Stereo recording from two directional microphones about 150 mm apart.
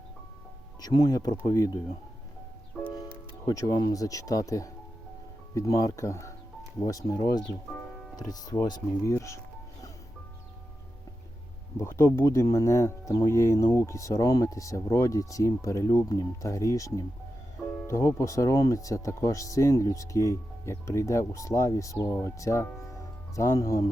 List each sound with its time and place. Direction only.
0.8 s speech: 25° left (ahead or behind)
2.8 s music: 5° left (ahead or behind)
3.4 s speech: 25° left (ahead or behind)
11.8 s speech: 15° left (ahead or behind)